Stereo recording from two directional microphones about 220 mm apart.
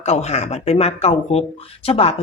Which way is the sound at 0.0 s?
30° left (ahead or behind).